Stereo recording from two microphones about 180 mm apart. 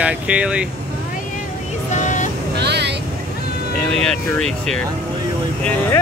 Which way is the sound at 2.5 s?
70° right (ahead or behind).